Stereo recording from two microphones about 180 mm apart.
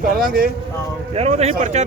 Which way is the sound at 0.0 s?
55° right (ahead or behind).